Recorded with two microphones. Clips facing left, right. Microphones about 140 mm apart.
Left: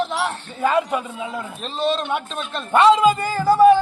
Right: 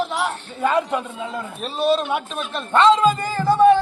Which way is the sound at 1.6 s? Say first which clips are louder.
Right 3 dB; 5° right (ahead or behind).